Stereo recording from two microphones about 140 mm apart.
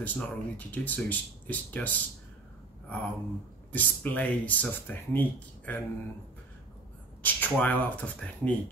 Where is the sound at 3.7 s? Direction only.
10° left (ahead or behind).